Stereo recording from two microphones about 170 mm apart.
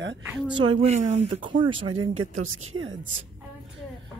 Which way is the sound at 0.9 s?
45° right (ahead or behind).